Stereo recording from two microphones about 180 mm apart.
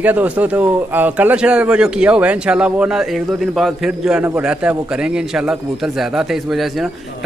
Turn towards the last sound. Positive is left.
turn(degrees=0)  # may be behind; listen again after turning